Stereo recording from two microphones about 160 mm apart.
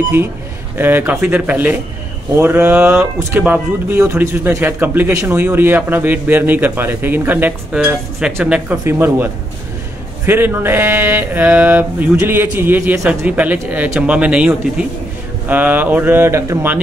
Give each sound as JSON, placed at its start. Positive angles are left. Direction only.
{"t": 0.7, "sound": "speech", "side_deg": -10}